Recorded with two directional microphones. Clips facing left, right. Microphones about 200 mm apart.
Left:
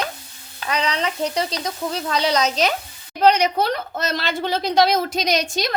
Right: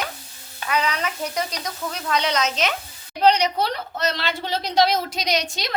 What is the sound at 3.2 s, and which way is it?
Speech, 50° left (ahead or behind).